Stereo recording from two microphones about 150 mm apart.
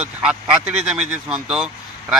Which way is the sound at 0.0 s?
5° right (ahead or behind).